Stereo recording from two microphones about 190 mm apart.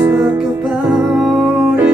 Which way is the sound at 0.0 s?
5° right (ahead or behind).